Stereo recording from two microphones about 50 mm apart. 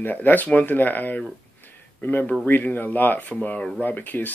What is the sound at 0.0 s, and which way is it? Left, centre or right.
Speech, left.